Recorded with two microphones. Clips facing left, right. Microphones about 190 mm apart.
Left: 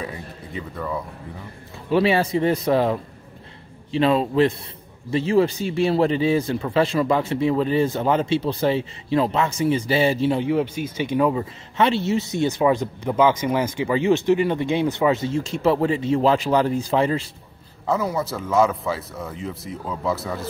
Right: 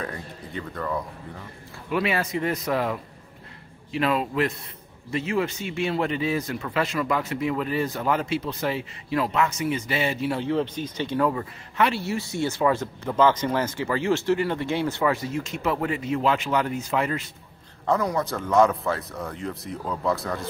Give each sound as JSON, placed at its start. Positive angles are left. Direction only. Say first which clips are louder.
{"t": 0.0, "sound": "speech", "louder": "left 1 dB", "side_deg": 5}
{"t": 1.9, "sound": "speech", "louder": "left 7 dB", "side_deg": 30}
{"t": 10.3, "sound": "speech", "louder": "left 4 dB", "side_deg": 15}
{"t": 17.8, "sound": "speech", "louder": "left 1 dB", "side_deg": 5}